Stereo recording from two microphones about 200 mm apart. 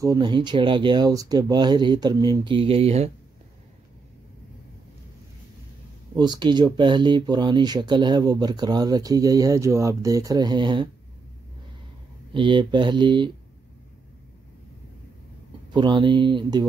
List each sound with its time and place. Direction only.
0.0 s speech: 20° right (ahead or behind)
6.1 s speech: 20° right (ahead or behind)
12.4 s speech: 25° right (ahead or behind)
15.7 s speech: 20° right (ahead or behind)